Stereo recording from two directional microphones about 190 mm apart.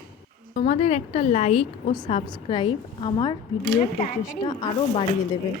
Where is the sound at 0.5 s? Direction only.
35° left (ahead or behind).